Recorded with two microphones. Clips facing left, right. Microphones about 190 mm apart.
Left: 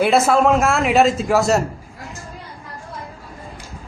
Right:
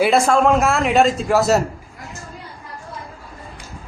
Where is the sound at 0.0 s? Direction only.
Centre (ahead or behind).